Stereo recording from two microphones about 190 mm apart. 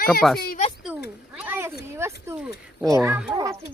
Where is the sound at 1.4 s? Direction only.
10° right (ahead or behind).